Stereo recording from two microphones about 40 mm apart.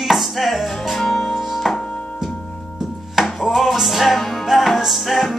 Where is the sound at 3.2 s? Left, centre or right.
Centre.